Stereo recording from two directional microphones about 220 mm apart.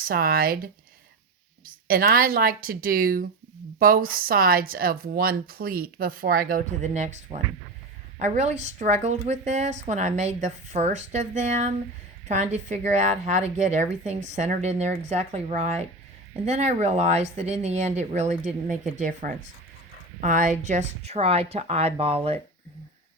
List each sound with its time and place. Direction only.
0.0 s a woman's voice: 40° right (ahead or behind)